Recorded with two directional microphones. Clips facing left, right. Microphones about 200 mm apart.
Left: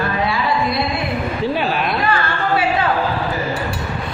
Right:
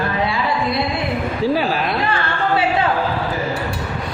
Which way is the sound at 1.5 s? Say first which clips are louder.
Right 1 dB; 35° right (ahead or behind).